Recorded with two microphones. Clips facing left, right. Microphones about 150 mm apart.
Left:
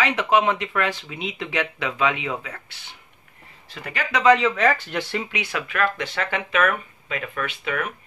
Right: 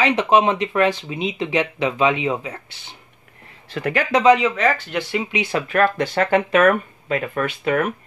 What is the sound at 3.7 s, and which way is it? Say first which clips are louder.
Speech: right 12 dB; 60° right (ahead or behind).